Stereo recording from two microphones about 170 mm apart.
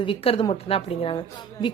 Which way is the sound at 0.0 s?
30° left (ahead or behind).